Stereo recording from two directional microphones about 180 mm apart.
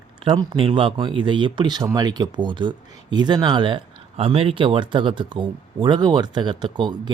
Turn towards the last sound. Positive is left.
turn(degrees=-25)  # may be behind; listen again after turning